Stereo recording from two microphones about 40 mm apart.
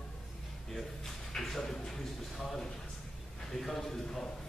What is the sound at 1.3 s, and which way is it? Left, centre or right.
Speech, centre.